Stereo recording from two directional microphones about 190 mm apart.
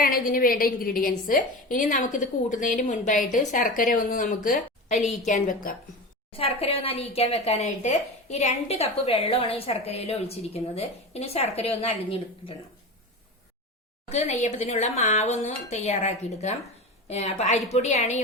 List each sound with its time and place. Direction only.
0.0 s a woman's voice: 50° left (ahead or behind); by 11.9 s 30° left (ahead or behind)
14.1 s a woman's voice: 40° left (ahead or behind)